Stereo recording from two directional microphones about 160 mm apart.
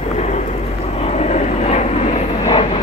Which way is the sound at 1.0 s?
45° left (ahead or behind).